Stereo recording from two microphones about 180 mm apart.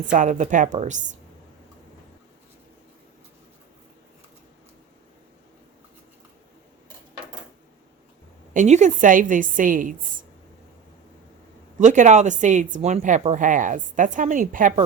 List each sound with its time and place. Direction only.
0.1 s speech: 45° right (ahead or behind)
8.5 s speech: 40° right (ahead or behind)
11.8 s speech: 40° right (ahead or behind)